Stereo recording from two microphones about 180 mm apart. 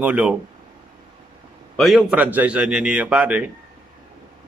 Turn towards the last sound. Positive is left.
turn(degrees=-5)  # may be behind; listen again after turning